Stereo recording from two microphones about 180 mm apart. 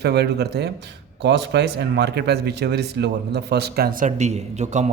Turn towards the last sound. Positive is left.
turn(degrees=-40)  # may be behind; listen again after turning